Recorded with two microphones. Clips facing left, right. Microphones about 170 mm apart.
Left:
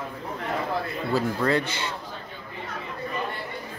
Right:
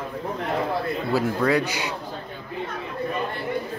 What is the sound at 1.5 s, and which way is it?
Speech, 10° right (ahead or behind).